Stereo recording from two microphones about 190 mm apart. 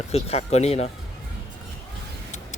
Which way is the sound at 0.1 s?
35° left (ahead or behind).